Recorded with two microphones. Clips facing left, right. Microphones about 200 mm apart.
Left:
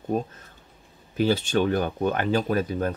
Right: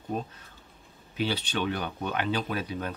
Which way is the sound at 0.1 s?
45° left (ahead or behind).